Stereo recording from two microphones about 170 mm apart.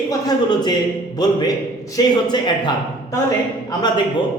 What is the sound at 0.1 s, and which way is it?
Speech, 25° left (ahead or behind).